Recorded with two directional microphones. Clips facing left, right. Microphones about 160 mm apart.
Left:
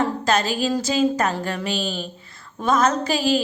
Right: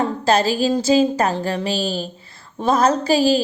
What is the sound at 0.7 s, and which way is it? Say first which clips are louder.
A woman's voice: right 4 dB; 30° right (ahead or behind).